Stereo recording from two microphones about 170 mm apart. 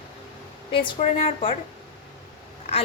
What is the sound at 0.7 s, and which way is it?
Speech, 30° left (ahead or behind).